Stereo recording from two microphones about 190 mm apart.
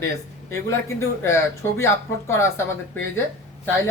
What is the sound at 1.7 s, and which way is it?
Speech, 15° left (ahead or behind).